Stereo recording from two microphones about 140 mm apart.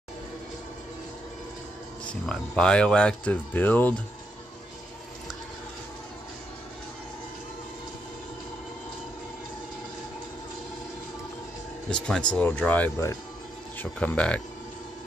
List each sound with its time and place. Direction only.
2.2 s speech: 5° left (ahead or behind)
11.9 s speech: 5° left (ahead or behind)
12.9 s speech: 20° left (ahead or behind)
13.7 s speech: 10° left (ahead or behind)